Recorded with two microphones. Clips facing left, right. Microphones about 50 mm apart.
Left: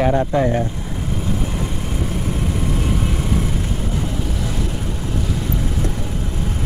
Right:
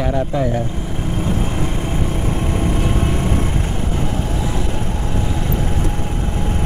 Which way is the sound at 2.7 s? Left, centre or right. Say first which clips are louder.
Right 2 dB; right.